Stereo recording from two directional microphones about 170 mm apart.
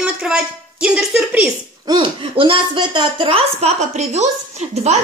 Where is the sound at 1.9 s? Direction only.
30° right (ahead or behind).